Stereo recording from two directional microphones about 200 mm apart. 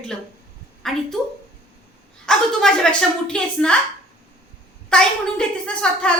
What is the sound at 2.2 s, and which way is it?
A woman's voice, 5° left (ahead or behind).